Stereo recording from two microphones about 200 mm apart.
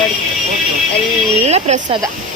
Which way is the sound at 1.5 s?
35° right (ahead or behind).